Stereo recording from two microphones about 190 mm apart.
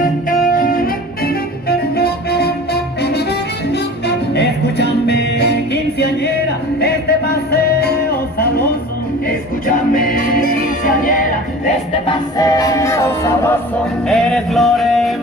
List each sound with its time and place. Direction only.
0.0 s music: 45° left (ahead or behind)
4.3 s music: 60° left (ahead or behind)
9.7 s music: 45° left (ahead or behind)
12.1 s music: 20° left (ahead or behind)
14.0 s music: 5° left (ahead or behind)